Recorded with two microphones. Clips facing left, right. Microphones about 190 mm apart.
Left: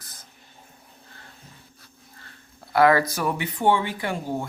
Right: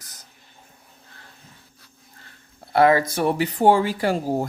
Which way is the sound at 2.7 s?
25° right (ahead or behind).